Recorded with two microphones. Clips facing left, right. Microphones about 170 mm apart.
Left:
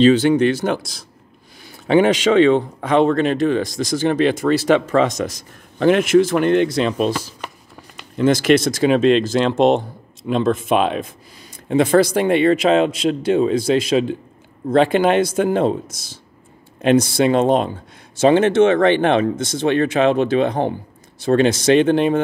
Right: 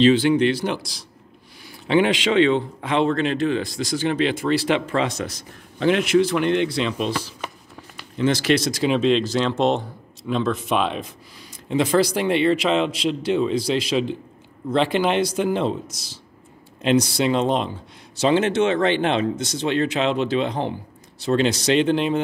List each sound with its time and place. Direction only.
0.1 s speech: 40° left (ahead or behind)
2.2 s speech: 45° left (ahead or behind)